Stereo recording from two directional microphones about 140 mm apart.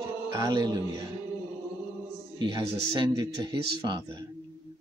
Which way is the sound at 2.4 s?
35° right (ahead or behind).